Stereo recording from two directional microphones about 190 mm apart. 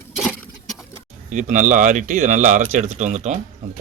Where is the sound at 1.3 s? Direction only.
40° right (ahead or behind).